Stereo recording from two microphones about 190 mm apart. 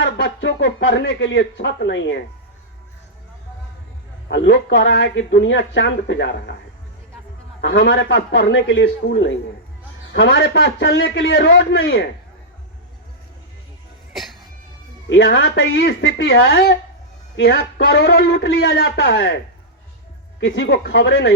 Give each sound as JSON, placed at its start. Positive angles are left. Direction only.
{"t": 0.0, "sound": "speech", "side_deg": 70}
{"t": 4.3, "sound": "speech", "side_deg": 70}
{"t": 7.6, "sound": "speech", "side_deg": 75}
{"t": 15.1, "sound": "a man's voice", "side_deg": 70}
{"t": 20.4, "sound": "speech", "side_deg": 65}